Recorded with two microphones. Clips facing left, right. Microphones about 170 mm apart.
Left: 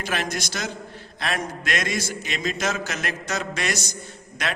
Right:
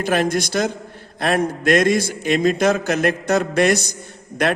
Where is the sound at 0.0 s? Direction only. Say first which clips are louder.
Right 9 dB; 50° right (ahead or behind).